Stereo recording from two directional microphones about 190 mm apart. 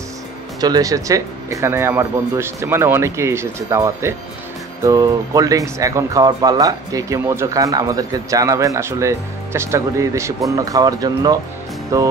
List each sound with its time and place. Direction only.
0.6 s speech: 20° right (ahead or behind)